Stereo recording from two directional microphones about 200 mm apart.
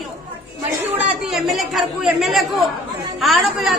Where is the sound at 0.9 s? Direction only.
5° right (ahead or behind).